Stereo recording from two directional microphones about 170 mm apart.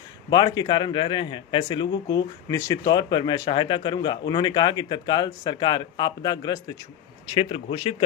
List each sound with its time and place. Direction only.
0.3 s a man's voice: 25° left (ahead or behind)